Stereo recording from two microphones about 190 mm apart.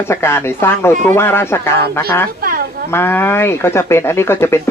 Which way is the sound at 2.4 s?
50° right (ahead or behind).